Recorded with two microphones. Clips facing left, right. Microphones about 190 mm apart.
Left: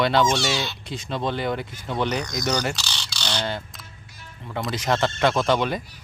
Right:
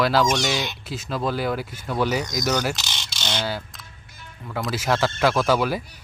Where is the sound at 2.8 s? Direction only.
20° right (ahead or behind).